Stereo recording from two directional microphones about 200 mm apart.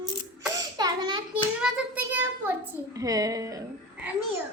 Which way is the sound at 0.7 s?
20° right (ahead or behind).